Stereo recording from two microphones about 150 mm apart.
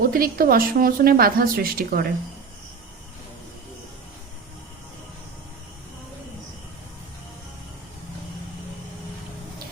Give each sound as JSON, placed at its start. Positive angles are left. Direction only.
{"t": 0.0, "sound": "a woman's voice", "side_deg": -75}